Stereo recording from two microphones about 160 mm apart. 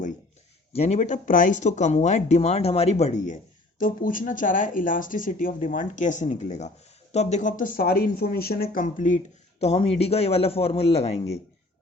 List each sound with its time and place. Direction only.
0.7 s speech: 40° left (ahead or behind)